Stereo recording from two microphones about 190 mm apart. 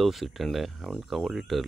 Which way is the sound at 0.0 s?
Centre (ahead or behind).